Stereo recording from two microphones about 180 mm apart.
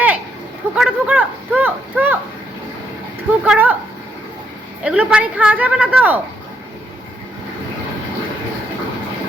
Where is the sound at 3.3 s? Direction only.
5° right (ahead or behind).